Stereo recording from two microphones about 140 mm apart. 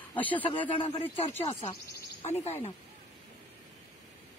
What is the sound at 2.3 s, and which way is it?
Speech, 45° left (ahead or behind).